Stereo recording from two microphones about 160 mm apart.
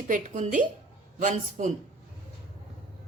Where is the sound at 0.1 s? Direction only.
50° right (ahead or behind).